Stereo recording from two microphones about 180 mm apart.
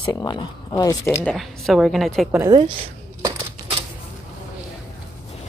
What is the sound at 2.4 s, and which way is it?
Speech, 25° right (ahead or behind).